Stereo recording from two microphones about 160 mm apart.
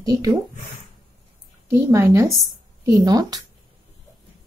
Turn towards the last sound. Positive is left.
turn(degrees=-20)  # may be behind; listen again after turning